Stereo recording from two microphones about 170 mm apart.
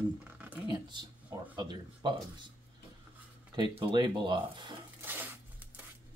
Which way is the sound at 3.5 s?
25° right (ahead or behind).